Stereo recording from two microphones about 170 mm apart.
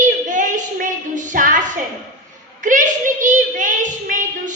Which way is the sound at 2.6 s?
50° right (ahead or behind).